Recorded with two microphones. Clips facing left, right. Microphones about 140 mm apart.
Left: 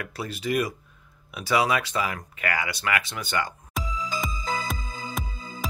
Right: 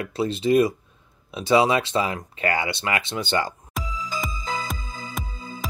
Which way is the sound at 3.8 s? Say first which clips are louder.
Even; centre (ahead or behind).